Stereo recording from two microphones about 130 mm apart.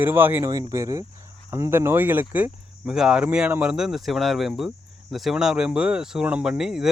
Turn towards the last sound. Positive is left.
turn(degrees=-5)  # may be behind; listen again after turning